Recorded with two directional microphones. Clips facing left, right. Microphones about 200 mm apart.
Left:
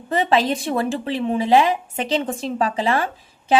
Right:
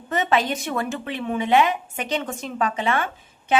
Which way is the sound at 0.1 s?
30° left (ahead or behind).